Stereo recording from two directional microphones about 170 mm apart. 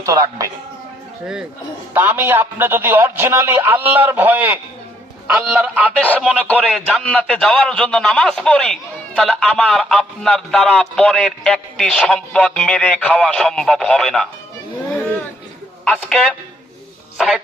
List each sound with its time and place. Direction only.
0.0 s speech: 20° right (ahead or behind)
1.9 s a man's voice: 10° right (ahead or behind)
6.0 s a man's voice: 10° left (ahead or behind)
15.8 s a man's voice: centre (ahead or behind)